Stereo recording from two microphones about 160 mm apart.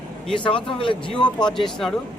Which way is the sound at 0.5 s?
30° left (ahead or behind).